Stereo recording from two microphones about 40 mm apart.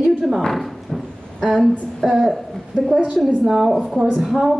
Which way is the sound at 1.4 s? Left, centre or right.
Centre.